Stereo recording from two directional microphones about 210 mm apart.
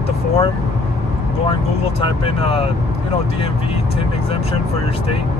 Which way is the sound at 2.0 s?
25° left (ahead or behind).